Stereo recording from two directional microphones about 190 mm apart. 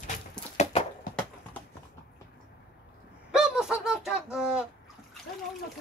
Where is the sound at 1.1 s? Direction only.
45° left (ahead or behind).